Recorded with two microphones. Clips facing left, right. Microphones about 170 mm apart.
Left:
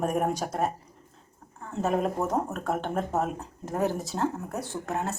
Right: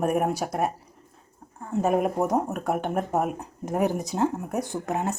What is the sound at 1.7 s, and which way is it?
Speech, 10° right (ahead or behind).